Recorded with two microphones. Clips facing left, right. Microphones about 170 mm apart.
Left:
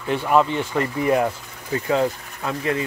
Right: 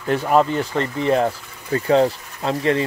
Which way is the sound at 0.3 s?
35° right (ahead or behind).